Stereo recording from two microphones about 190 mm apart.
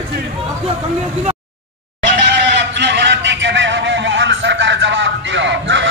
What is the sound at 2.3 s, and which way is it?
Vehicle, 65° right (ahead or behind).